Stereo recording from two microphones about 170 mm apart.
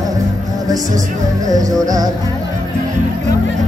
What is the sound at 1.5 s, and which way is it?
Music, 20° right (ahead or behind).